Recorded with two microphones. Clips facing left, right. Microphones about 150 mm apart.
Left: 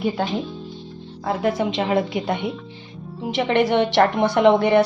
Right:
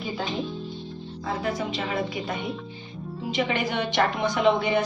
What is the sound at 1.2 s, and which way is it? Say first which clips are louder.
A woman's voice: left 7 dB; 60° left (ahead or behind).